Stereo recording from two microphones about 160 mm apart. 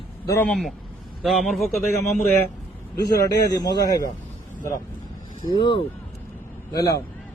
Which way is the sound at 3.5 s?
20° left (ahead or behind).